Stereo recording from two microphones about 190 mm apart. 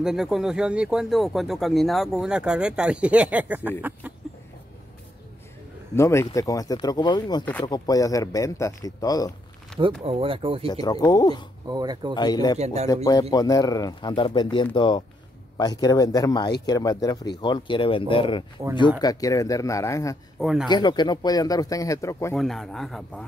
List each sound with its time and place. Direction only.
0.0 s speech: centre (ahead or behind)
5.9 s speech: 15° left (ahead or behind)
7.4 s speech: 10° left (ahead or behind)
7.7 s speech: 20° left (ahead or behind)
9.7 s speech: 5° left (ahead or behind)
10.0 s speech: 30° right (ahead or behind)
10.7 s speech: 20° left (ahead or behind)
11.6 s speech: 20° right (ahead or behind)
12.2 s speech: 20° left (ahead or behind)
12.5 s speech: 35° right (ahead or behind)
12.8 s speech: 20° left (ahead or behind)
20.3 s speech: centre (ahead or behind)
20.6 s speech: 20° left (ahead or behind)
22.3 s speech: centre (ahead or behind)